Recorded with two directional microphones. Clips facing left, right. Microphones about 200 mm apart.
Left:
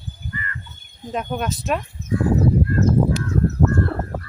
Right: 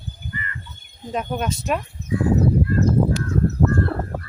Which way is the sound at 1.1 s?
Centre (ahead or behind).